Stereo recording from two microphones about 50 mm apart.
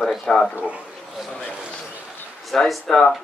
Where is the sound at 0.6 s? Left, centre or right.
Right.